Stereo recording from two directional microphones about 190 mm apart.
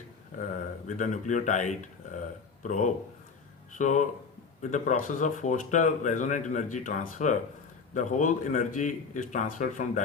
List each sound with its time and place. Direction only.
0.9 s speech: 40° left (ahead or behind)